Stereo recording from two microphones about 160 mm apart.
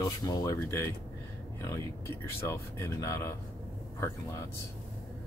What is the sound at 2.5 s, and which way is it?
Speech, 15° left (ahead or behind).